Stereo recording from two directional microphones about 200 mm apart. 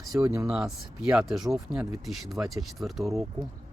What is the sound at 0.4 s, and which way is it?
A man's voice, 5° right (ahead or behind).